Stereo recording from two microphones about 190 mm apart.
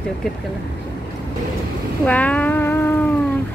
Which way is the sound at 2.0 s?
5° left (ahead or behind).